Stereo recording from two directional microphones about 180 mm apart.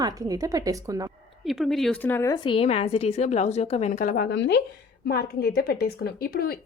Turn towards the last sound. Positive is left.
turn(degrees=55)  # may be behind; listen again after turning